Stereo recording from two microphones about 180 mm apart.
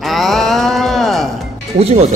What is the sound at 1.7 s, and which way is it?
Speech, 35° right (ahead or behind).